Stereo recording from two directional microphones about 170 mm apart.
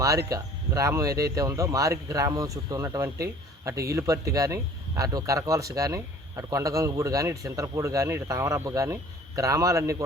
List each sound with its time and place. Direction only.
0.3 s speech: 20° right (ahead or behind)